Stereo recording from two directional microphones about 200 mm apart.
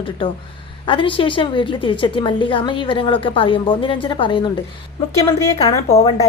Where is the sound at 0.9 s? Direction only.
25° left (ahead or behind).